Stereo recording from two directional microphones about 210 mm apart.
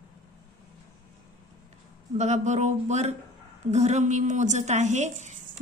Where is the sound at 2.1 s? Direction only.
35° right (ahead or behind).